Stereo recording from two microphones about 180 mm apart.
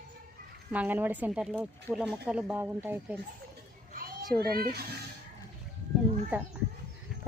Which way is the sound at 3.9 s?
55° right (ahead or behind).